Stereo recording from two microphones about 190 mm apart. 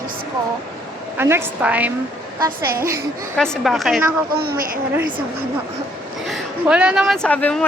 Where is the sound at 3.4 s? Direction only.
Centre (ahead or behind).